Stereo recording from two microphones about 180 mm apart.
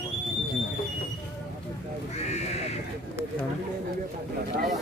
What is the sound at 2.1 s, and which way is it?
Crow, 40° left (ahead or behind).